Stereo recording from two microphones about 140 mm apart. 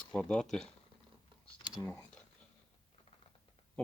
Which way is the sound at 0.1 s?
5° left (ahead or behind).